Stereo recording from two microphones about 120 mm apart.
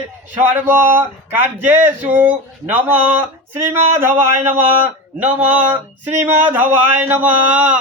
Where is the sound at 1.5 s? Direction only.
15° right (ahead or behind).